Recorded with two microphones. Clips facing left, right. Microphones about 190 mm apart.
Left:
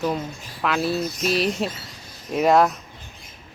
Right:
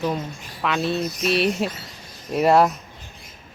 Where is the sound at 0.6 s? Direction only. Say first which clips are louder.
Even; centre (ahead or behind).